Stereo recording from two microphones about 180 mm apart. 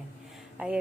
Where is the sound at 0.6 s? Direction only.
10° right (ahead or behind).